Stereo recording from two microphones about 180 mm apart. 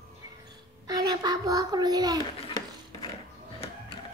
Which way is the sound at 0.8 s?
20° right (ahead or behind).